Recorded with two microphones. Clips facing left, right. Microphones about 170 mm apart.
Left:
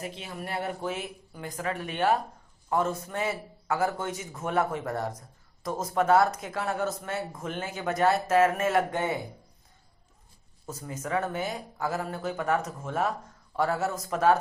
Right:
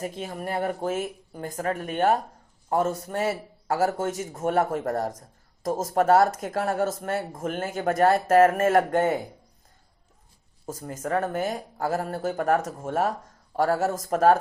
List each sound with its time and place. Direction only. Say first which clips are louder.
0.0 s a man's voice: right 5 dB; 45° right (ahead or behind)
10.7 s a man's voice: right 4 dB; 45° right (ahead or behind)